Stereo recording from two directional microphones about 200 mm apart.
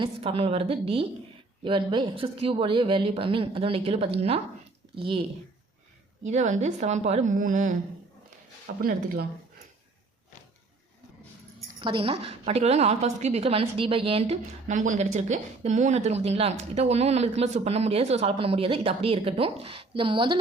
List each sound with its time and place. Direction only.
0.0 s speech: 30° right (ahead or behind)
6.2 s a woman's voice: 35° right (ahead or behind)
8.6 s speech: 50° right (ahead or behind)
11.8 s a woman's voice: 25° right (ahead or behind)